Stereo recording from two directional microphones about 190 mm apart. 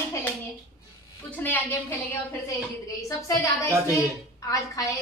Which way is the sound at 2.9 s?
15° left (ahead or behind).